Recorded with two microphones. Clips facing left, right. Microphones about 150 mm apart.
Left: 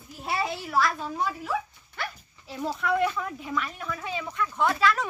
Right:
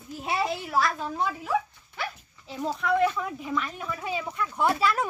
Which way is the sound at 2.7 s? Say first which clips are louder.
Right 2 dB; centre (ahead or behind).